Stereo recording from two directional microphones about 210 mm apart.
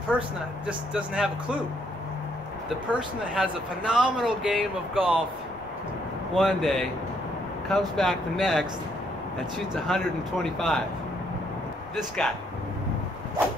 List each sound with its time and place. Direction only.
0.1 s speech: 5° right (ahead or behind)
3.3 s speech: 5° right (ahead or behind)
6.3 s speech: centre (ahead or behind)
9.8 s speech: centre (ahead or behind)
11.9 s speech: centre (ahead or behind)